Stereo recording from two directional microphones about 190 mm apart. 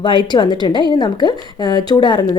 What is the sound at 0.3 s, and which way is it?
A woman's voice, 25° left (ahead or behind).